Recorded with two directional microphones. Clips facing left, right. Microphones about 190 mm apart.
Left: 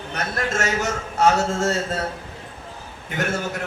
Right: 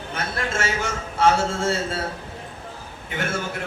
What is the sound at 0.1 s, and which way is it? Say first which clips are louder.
A man's voice: left 2 dB; 40° left (ahead or behind).